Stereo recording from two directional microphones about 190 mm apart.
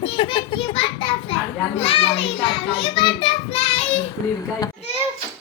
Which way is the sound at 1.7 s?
30° left (ahead or behind).